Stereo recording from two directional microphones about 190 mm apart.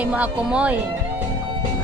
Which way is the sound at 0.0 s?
5° right (ahead or behind).